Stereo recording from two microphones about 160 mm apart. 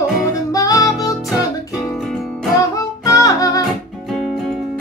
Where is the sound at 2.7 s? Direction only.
20° left (ahead or behind).